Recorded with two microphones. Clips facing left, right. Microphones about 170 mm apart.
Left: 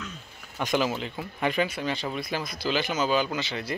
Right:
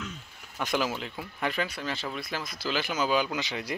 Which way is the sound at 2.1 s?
Centre (ahead or behind).